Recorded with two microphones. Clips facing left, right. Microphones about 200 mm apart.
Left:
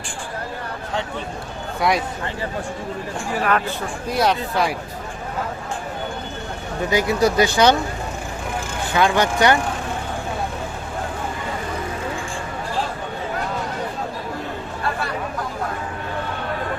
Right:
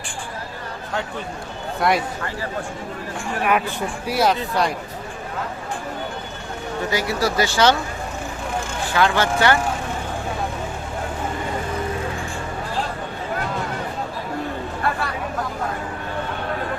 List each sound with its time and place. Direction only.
1.8 s speech: centre (ahead or behind)
3.4 s speech: 15° right (ahead or behind)
6.9 s speech: 20° left (ahead or behind)
8.9 s speech: 20° left (ahead or behind)